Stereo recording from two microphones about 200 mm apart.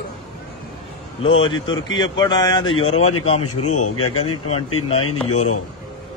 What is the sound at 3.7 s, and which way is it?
Speech, 90° left.